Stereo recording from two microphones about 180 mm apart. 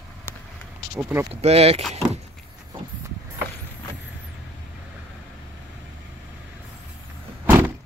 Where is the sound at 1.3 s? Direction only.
35° right (ahead or behind).